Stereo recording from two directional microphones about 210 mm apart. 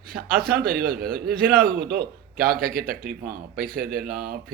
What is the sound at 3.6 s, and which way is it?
Speech, 40° right (ahead or behind).